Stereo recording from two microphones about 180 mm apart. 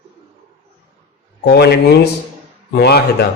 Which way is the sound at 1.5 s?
60° left (ahead or behind).